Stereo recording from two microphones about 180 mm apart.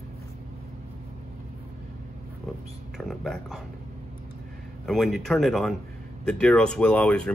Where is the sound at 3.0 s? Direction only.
Centre (ahead or behind).